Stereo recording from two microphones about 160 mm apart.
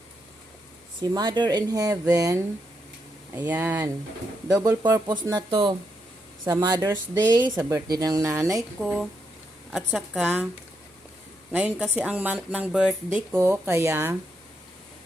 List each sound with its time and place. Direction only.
1.1 s speech: 30° right (ahead or behind)
3.3 s speech: 10° right (ahead or behind)
5.5 s speech: 35° right (ahead or behind)
8.8 s a woman's voice: 5° right (ahead or behind)
11.5 s speech: 10° right (ahead or behind)